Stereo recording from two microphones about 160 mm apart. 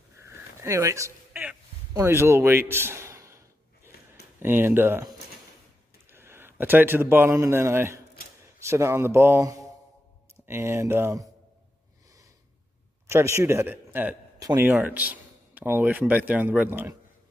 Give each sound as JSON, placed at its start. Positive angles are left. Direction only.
{"t": 0.2, "sound": "a sound", "side_deg": -15}
{"t": 4.4, "sound": "speech", "side_deg": -15}
{"t": 6.1, "sound": "a man's voice", "side_deg": -15}
{"t": 13.0, "sound": "a man's voice", "side_deg": -15}